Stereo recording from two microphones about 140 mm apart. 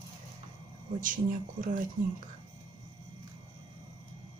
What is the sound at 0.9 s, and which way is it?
Speech, 70° right (ahead or behind).